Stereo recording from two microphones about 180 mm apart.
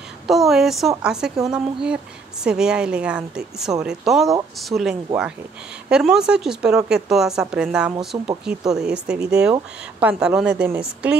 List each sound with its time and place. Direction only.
0.3 s speech: centre (ahead or behind)
8.1 s speech: 15° right (ahead or behind)
8.5 s speech: 5° right (ahead or behind)